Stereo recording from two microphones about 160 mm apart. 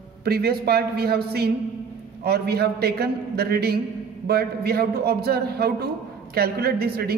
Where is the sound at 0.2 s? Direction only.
75° right (ahead or behind).